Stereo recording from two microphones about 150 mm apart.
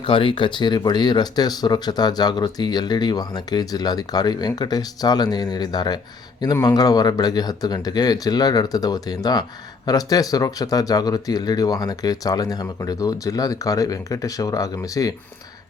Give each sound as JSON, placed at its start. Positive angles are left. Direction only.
{"t": 0.0, "sound": "speech", "side_deg": 35}